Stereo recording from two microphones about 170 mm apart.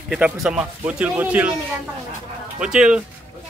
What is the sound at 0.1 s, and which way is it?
A man's voice, 5° right (ahead or behind).